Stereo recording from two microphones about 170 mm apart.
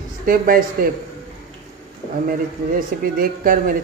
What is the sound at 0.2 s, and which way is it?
Speech, 55° right (ahead or behind).